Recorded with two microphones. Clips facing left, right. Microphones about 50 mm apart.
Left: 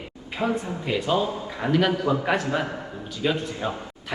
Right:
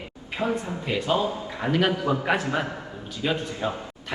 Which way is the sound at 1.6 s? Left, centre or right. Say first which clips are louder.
Left 1 dB; centre.